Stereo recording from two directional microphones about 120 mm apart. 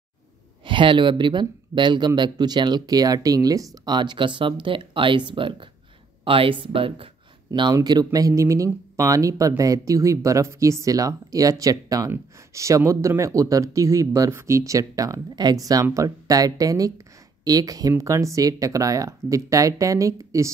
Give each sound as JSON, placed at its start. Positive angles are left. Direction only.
{"t": 0.7, "sound": "speech", "side_deg": -45}
{"t": 7.7, "sound": "speech", "side_deg": -35}